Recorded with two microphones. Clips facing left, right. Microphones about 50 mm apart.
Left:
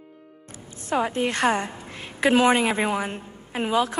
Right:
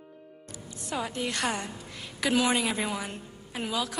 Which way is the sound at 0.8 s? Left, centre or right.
Left.